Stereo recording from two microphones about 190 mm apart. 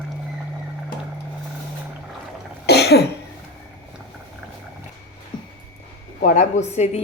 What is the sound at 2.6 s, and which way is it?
Cough, 60° left (ahead or behind).